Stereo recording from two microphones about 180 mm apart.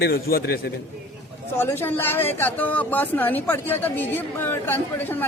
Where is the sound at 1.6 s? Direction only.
10° left (ahead or behind).